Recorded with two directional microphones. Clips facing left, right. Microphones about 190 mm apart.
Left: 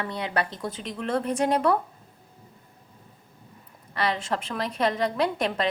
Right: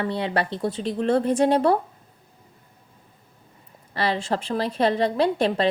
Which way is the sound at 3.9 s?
30° right (ahead or behind).